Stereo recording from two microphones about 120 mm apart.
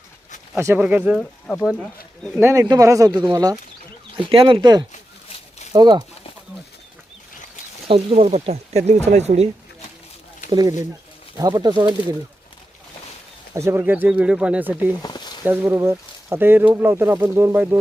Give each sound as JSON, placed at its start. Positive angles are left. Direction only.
{"t": 0.5, "sound": "speech", "side_deg": -15}
{"t": 2.4, "sound": "speech", "side_deg": -20}
{"t": 4.3, "sound": "speech", "side_deg": -50}
{"t": 7.9, "sound": "speech", "side_deg": -55}
{"t": 10.5, "sound": "speech", "side_deg": -35}
{"t": 13.5, "sound": "speech", "side_deg": -20}
{"t": 15.0, "sound": "a sound", "side_deg": 35}
{"t": 15.4, "sound": "speech", "side_deg": -20}